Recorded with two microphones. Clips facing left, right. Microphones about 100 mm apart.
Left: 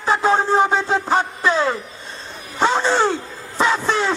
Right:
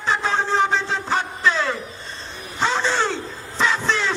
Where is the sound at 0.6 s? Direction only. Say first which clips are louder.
Left 4 dB; 45° left (ahead or behind).